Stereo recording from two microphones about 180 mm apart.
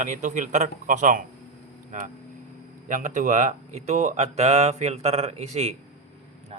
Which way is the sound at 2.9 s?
45° right (ahead or behind).